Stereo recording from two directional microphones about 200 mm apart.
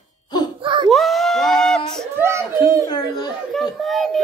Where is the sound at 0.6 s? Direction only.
25° right (ahead or behind).